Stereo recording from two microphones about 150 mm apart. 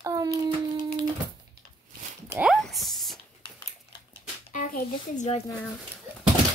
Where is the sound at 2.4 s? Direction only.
Centre (ahead or behind).